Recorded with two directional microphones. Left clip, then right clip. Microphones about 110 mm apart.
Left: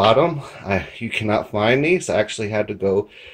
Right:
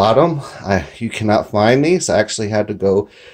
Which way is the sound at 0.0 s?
35° right (ahead or behind).